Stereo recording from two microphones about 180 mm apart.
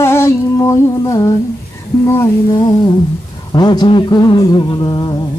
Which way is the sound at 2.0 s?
15° left (ahead or behind).